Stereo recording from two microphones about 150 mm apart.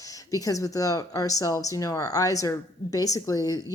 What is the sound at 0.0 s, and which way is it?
Speech, 25° left (ahead or behind).